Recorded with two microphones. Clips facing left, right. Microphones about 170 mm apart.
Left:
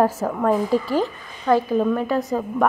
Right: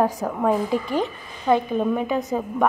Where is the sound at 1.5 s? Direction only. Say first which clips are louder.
Left 2 dB; 5° right (ahead or behind).